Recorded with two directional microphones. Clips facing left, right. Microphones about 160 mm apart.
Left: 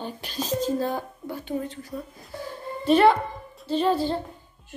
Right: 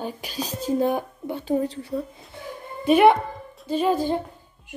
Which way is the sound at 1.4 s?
35° right (ahead or behind).